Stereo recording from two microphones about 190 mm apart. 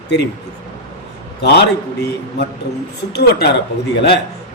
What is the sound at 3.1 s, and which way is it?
Speech, 60° left (ahead or behind).